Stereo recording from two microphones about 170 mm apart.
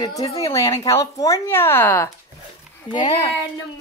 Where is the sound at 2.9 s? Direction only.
35° left (ahead or behind).